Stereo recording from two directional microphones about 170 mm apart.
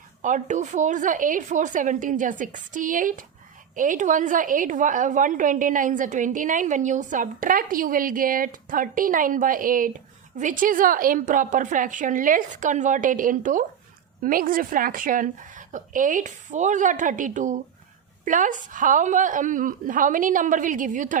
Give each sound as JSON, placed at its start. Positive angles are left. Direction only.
{"t": 0.2, "sound": "a woman's voice", "side_deg": -45}